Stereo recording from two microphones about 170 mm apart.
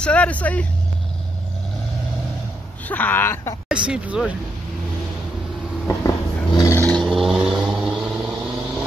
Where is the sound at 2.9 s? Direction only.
10° left (ahead or behind).